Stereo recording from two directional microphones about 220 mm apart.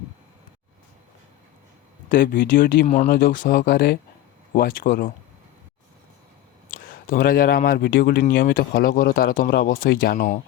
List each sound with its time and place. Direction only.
2.0 s speech: 40° left (ahead or behind)
3.1 s speech: 45° left (ahead or behind)
6.7 s speech: 40° left (ahead or behind)